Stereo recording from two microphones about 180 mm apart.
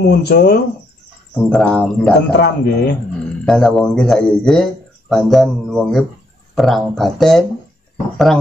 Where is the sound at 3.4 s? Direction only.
Centre (ahead or behind).